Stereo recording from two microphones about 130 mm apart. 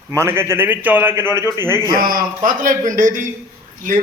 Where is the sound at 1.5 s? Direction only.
30° left (ahead or behind).